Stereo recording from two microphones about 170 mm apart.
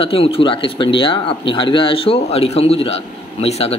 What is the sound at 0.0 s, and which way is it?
Speech, 35° left (ahead or behind).